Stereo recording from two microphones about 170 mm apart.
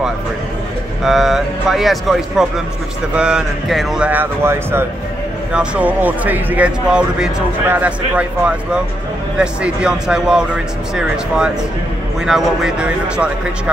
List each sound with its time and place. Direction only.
1.0 s speech: centre (ahead or behind)